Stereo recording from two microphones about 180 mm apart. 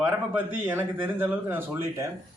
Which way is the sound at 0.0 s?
10° right (ahead or behind).